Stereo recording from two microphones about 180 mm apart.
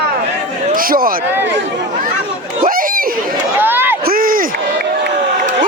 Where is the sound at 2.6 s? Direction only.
50° right (ahead or behind).